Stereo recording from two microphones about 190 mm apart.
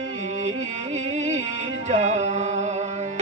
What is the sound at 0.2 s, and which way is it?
Music, 35° right (ahead or behind).